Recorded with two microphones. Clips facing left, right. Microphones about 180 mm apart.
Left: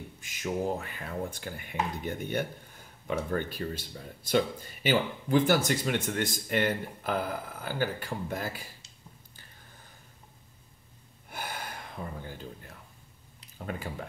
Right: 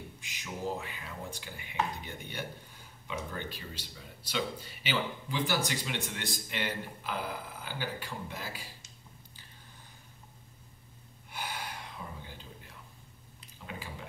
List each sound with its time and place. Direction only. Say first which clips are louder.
0.2 s speech: left 8 dB; 45° left (ahead or behind)
11.2 s gasp: left 1 dB; 50° left (ahead or behind)
13.7 s speech: left 7 dB; 50° left (ahead or behind)